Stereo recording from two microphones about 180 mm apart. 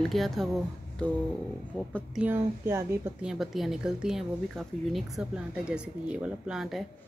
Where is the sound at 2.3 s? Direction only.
15° right (ahead or behind).